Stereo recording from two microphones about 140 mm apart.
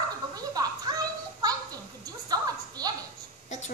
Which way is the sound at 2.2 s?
25° right (ahead or behind).